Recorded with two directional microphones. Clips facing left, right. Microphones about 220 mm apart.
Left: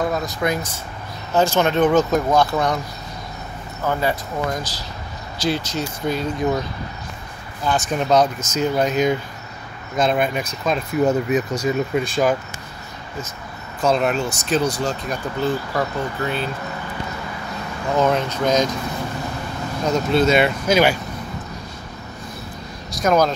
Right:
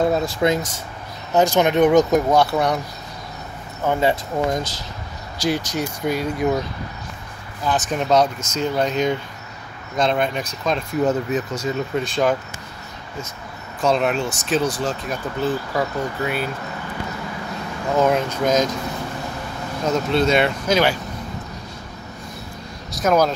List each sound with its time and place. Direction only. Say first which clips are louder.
0.0 s speech: right 3 dB; 25° right (ahead or behind); by 2.8 s 10° right (ahead or behind)
3.8 s speech: right 2 dB; 20° right (ahead or behind)
7.6 s speech: left 1 dB; centre (ahead or behind)
13.7 s speech: even; centre (ahead or behind)
17.9 s speech: right 1 dB; 5° right (ahead or behind)
19.9 s speech: left 1 dB; 5° left (ahead or behind)
22.8 s speech: even; 5° right (ahead or behind)